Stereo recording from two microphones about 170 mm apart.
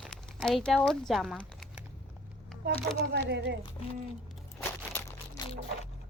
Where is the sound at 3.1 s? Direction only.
80° right.